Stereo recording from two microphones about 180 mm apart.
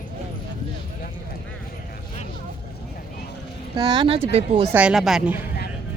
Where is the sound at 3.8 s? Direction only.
25° right (ahead or behind).